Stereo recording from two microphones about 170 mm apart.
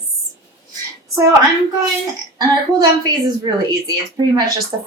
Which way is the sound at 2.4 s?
25° right (ahead or behind).